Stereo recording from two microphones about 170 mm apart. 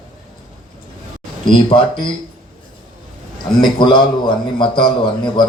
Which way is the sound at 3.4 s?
25° left (ahead or behind).